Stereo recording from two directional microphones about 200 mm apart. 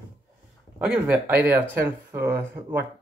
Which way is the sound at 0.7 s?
5° right (ahead or behind).